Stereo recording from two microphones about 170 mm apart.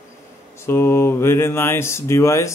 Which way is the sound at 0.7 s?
15° left (ahead or behind).